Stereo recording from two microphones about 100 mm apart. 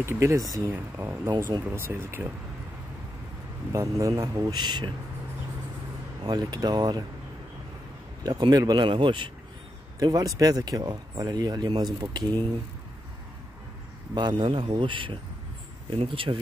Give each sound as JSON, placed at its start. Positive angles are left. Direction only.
{"t": 0.0, "sound": "speech", "side_deg": -30}
{"t": 0.7, "sound": "speech", "side_deg": -20}
{"t": 3.7, "sound": "speech", "side_deg": -30}
{"t": 6.2, "sound": "speech", "side_deg": -45}
{"t": 8.2, "sound": "speech", "side_deg": -45}
{"t": 9.9, "sound": "speech", "side_deg": -35}
{"t": 14.1, "sound": "a man's voice", "side_deg": -50}